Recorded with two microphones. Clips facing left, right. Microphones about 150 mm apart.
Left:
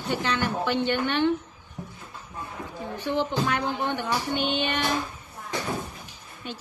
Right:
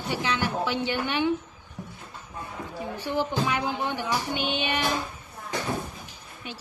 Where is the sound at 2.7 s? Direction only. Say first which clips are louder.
Left 1 dB; 10° right (ahead or behind).